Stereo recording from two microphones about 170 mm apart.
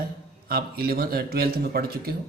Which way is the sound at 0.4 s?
65° right (ahead or behind).